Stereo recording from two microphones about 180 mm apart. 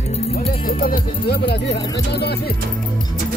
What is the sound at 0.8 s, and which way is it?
Speech, 50° left (ahead or behind).